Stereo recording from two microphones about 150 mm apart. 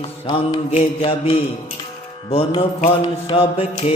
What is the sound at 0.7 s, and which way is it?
Music, 45° left (ahead or behind).